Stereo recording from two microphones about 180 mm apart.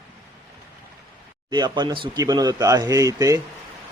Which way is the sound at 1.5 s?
25° right (ahead or behind).